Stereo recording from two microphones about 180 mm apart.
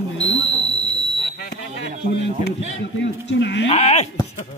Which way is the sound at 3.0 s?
80° left.